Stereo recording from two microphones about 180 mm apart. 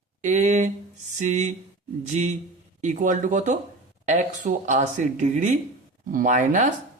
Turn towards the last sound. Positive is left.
turn(degrees=-45)  # may be behind; listen again after turning